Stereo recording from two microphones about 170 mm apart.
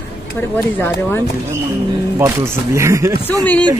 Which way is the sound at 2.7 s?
15° right (ahead or behind).